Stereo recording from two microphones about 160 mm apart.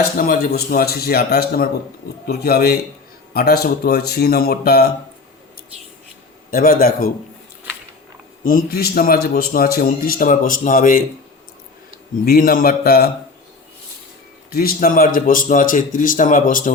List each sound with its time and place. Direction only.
0.2 s speech: 65° left (ahead or behind)
6.5 s speech: 60° left (ahead or behind)
8.4 s speech: 65° left (ahead or behind)
12.2 s speech: 65° left (ahead or behind)
14.5 s speech: 65° left (ahead or behind)